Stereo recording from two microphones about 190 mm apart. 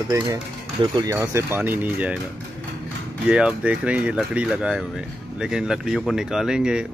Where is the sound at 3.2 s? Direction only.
5° right (ahead or behind).